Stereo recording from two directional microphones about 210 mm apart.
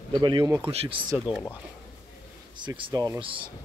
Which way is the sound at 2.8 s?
20° right (ahead or behind).